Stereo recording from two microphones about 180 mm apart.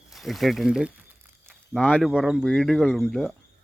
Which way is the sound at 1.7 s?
10° left (ahead or behind).